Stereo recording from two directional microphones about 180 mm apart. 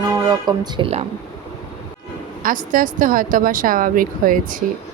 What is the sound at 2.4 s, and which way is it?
Speech, 50° right (ahead or behind).